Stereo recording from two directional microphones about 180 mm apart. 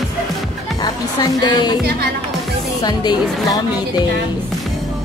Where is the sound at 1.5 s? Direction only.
25° left (ahead or behind).